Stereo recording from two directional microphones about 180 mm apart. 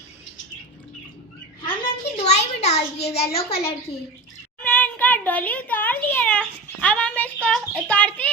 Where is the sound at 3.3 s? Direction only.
35° left (ahead or behind).